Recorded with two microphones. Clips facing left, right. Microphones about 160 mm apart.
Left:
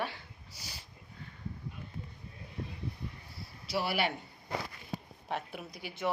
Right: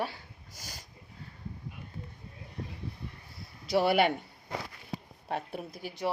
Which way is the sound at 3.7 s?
50° right (ahead or behind).